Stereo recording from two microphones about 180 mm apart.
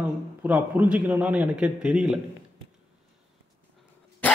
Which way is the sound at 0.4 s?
10° right (ahead or behind).